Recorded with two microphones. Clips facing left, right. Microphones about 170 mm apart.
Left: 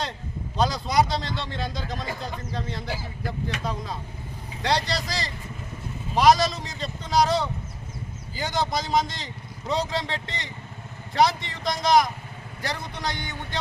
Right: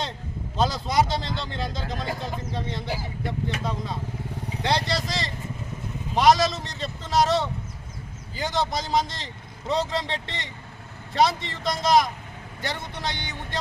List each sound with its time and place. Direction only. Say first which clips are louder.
0.5 s speech: left 1 dB; centre (ahead or behind)